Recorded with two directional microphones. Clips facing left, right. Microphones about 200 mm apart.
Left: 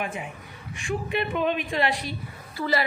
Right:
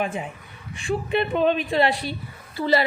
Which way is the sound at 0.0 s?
30° right (ahead or behind).